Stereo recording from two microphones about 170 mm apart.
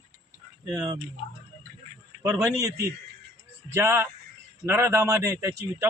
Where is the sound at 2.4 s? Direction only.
20° right (ahead or behind).